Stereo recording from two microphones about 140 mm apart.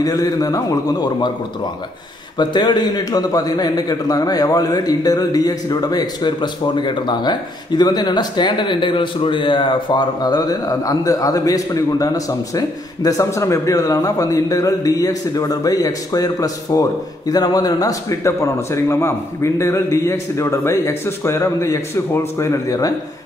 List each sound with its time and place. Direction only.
0.0 s a man's voice: 25° left (ahead or behind)
2.3 s a man's voice: 35° left (ahead or behind)